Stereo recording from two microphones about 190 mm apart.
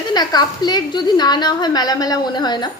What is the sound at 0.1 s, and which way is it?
A woman's voice, 20° left (ahead or behind).